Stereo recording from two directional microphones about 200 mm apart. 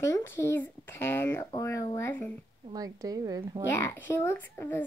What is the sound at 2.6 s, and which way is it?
A woman's voice, 20° right (ahead or behind).